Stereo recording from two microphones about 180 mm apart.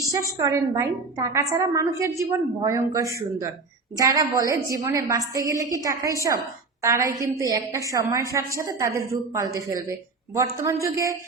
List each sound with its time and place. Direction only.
0.0 s a woman's voice: 20° right (ahead or behind)